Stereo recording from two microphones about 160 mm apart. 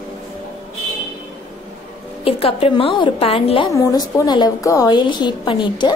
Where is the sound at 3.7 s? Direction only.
20° left (ahead or behind).